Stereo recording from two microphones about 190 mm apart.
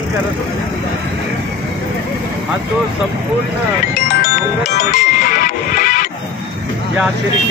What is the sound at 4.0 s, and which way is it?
Music, 45° left (ahead or behind).